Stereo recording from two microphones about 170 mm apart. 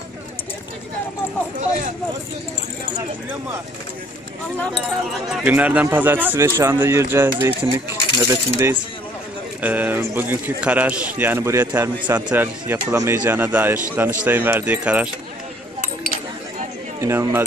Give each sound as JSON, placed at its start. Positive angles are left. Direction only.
{"t": 5.3, "sound": "speech", "side_deg": -10}
{"t": 17.0, "sound": "speech", "side_deg": -15}